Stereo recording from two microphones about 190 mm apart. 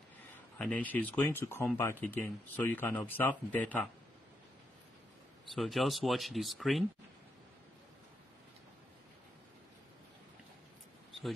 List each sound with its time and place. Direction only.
0.6 s speech: 5° left (ahead or behind)
5.5 s speech: centre (ahead or behind)